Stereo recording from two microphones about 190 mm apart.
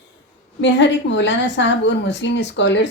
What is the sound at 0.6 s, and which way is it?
Speech, 65° left (ahead or behind).